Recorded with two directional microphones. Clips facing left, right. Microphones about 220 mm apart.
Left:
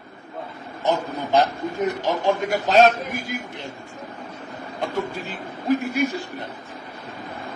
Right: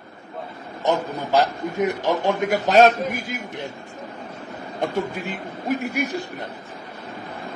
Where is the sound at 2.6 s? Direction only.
45° right (ahead or behind).